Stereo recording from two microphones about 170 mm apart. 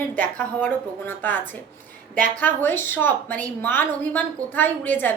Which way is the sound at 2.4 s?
10° left (ahead or behind).